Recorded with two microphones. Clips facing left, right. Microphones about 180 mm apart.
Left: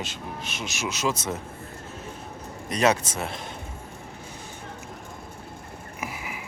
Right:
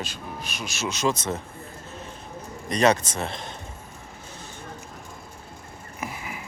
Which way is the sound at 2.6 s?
5° left (ahead or behind).